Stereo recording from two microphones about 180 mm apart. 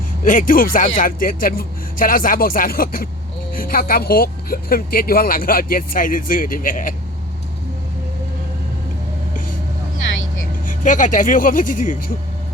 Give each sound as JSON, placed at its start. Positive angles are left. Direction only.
{"t": 0.3, "sound": "speech", "side_deg": 50}
{"t": 10.7, "sound": "speech", "side_deg": 45}